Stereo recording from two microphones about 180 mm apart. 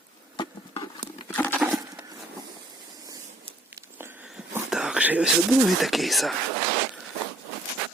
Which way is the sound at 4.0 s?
10° right (ahead or behind).